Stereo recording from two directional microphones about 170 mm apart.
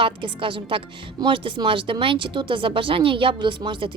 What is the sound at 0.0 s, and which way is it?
Speech, 30° right (ahead or behind).